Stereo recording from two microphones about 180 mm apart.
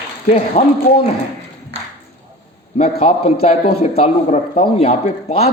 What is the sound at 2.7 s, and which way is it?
Speech, 35° left (ahead or behind).